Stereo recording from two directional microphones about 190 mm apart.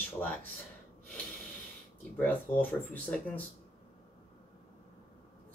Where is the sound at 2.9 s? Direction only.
10° left (ahead or behind).